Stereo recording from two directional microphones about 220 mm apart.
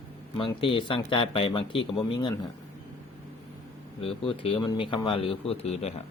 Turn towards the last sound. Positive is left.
turn(degrees=30)  # may be behind; listen again after turning